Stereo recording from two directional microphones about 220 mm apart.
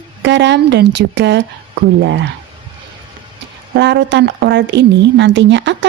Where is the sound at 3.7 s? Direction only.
55° right (ahead or behind).